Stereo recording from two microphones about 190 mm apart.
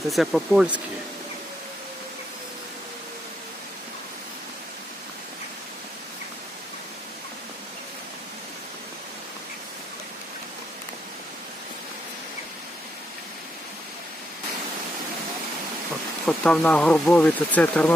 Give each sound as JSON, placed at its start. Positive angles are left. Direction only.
{"t": 0.1, "sound": "speech", "side_deg": 0}
{"t": 16.2, "sound": "speech", "side_deg": 5}